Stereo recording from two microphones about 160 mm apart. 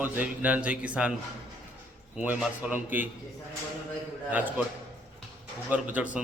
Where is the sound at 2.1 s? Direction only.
10° right (ahead or behind).